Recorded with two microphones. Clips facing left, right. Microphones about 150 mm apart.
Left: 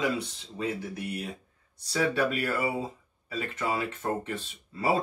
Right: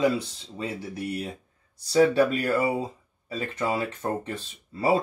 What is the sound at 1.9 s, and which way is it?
Speech, 35° right (ahead or behind).